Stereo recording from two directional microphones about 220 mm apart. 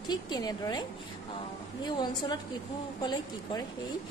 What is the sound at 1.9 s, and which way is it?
A woman's voice, 20° left (ahead or behind).